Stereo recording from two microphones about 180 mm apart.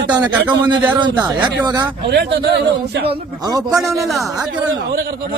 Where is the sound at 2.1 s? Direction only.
70° right (ahead or behind).